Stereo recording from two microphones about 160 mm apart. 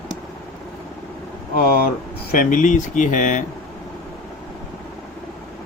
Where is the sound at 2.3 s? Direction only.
55° left (ahead or behind).